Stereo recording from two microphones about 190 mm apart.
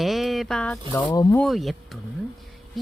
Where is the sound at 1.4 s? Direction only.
Centre (ahead or behind).